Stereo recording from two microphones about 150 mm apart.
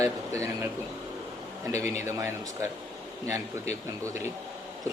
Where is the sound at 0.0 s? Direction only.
20° right (ahead or behind).